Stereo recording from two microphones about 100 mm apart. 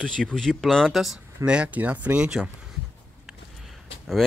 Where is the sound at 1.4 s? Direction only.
10° right (ahead or behind).